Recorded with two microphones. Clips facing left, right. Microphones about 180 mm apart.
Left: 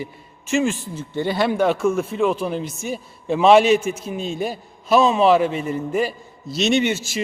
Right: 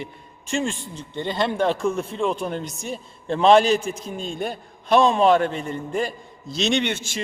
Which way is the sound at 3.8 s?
35° right (ahead or behind).